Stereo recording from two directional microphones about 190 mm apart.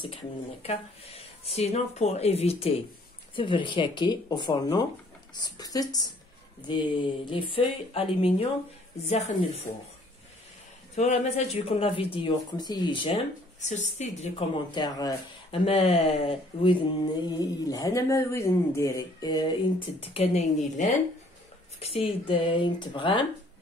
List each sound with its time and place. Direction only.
0.0 s speech: 30° left (ahead or behind)
11.0 s speech: 35° left (ahead or behind)
13.6 s speech: 35° left (ahead or behind)
14.7 s speech: 20° left (ahead or behind)
15.5 s speech: 30° left (ahead or behind)
17.3 s speech: 20° left (ahead or behind)
20.0 s speech: 35° left (ahead or behind)